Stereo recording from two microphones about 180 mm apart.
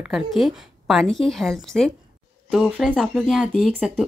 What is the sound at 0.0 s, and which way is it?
Speech, centre (ahead or behind).